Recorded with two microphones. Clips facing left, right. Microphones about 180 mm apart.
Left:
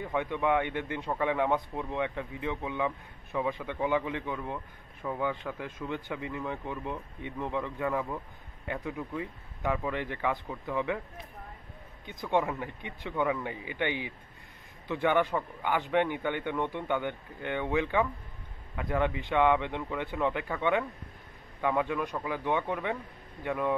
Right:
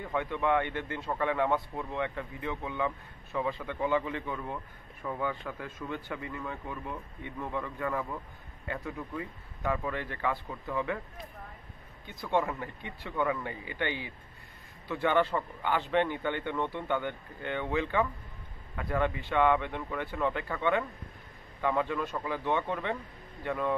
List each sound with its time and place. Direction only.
0.0 s speech: 15° left (ahead or behind)
12.1 s speech: 15° left (ahead or behind)